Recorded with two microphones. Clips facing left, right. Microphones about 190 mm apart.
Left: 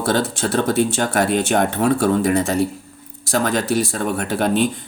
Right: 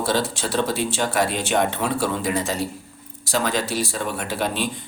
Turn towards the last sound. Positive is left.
turn(degrees=50)  # may be behind; listen again after turning